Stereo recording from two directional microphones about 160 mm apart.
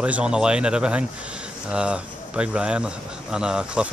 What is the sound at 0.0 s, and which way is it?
Speech, 5° right (ahead or behind).